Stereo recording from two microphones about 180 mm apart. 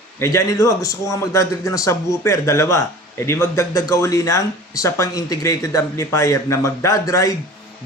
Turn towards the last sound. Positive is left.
turn(degrees=20)  # may be behind; listen again after turning